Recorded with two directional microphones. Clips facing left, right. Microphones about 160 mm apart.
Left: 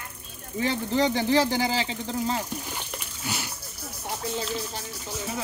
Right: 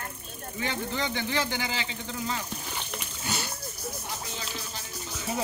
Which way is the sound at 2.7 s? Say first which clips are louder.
Even; 10° left (ahead or behind).